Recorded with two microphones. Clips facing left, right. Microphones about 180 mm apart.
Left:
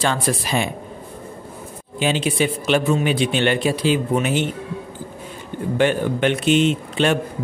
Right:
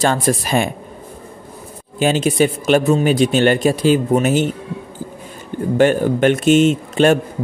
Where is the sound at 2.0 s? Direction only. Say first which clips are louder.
Right 5 dB; 45° right (ahead or behind).